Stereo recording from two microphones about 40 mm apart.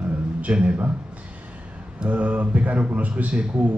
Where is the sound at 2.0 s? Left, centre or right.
Right.